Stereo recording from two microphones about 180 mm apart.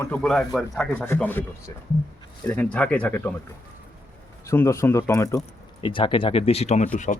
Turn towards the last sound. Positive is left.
turn(degrees=40)  # may be behind; listen again after turning